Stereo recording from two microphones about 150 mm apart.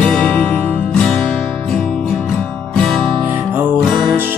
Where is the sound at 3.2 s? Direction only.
10° right (ahead or behind).